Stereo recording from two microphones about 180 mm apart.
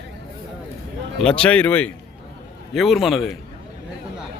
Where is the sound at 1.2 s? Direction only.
5° left (ahead or behind).